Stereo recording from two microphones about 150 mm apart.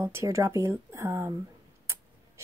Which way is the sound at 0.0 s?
20° right (ahead or behind).